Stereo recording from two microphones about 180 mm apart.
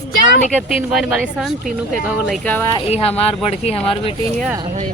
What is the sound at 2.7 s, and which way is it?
Speech, 35° left (ahead or behind).